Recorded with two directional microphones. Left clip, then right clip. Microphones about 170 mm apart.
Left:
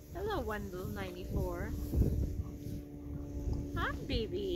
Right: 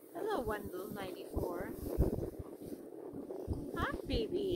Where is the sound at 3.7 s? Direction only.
20° right (ahead or behind).